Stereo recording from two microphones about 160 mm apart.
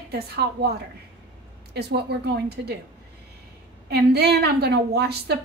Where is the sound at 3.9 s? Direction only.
90° right.